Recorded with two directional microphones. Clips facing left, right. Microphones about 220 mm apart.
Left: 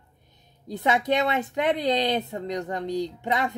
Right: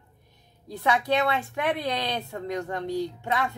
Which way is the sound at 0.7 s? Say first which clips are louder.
Left 1 dB; 20° left (ahead or behind).